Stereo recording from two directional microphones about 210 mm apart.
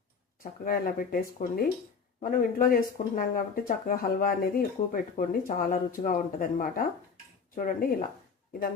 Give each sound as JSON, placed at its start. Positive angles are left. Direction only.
{"t": 0.6, "sound": "speech", "side_deg": 40}